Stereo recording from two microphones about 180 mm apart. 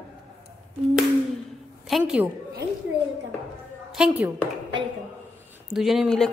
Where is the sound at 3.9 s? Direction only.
5° right (ahead or behind).